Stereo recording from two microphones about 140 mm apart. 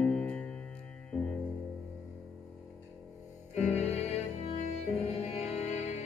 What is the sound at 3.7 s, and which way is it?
Music, 50° left (ahead or behind).